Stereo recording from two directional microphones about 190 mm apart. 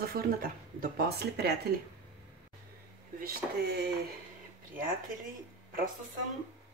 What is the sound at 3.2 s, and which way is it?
Speech, 55° right (ahead or behind).